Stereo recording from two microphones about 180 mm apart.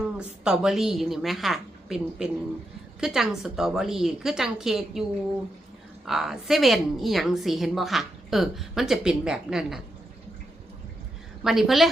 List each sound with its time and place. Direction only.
0.0 s a woman's voice: 5° right (ahead or behind)
6.1 s a woman's voice: centre (ahead or behind)
11.4 s a woman's voice: centre (ahead or behind)